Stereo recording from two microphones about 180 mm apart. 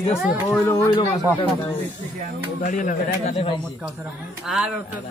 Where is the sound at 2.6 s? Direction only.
45° left (ahead or behind).